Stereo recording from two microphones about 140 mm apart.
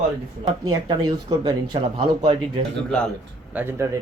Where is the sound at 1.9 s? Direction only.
45° right (ahead or behind).